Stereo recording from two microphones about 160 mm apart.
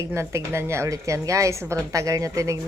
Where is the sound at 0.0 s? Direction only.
15° right (ahead or behind).